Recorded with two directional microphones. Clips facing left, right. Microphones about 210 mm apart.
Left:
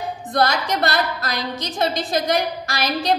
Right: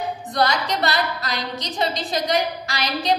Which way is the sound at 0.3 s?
50° left (ahead or behind).